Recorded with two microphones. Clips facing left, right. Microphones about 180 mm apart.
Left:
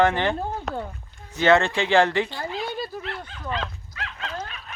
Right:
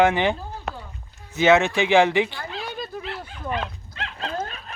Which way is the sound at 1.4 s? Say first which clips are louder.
Right 1 dB; 10° right (ahead or behind).